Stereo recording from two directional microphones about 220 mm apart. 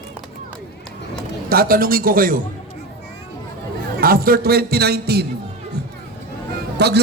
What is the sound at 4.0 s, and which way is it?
A man's voice, 40° right (ahead or behind).